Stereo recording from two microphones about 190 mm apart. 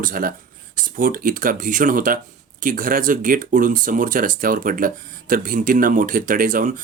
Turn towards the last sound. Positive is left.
turn(degrees=-45)  # may be behind; listen again after turning